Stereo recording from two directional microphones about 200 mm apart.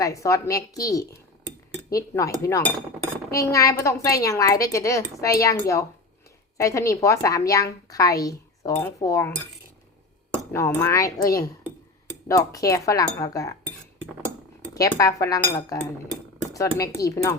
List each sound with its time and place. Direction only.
0.0 s a woman's voice: 15° left (ahead or behind)
10.3 s a woman's voice: 15° left (ahead or behind)
14.8 s a woman's voice: 15° left (ahead or behind)